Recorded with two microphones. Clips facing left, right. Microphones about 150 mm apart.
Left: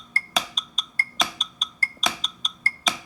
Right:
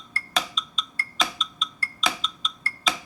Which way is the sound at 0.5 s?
40° left (ahead or behind).